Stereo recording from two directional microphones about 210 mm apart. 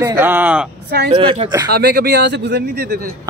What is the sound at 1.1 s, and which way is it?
Speech, 25° right (ahead or behind).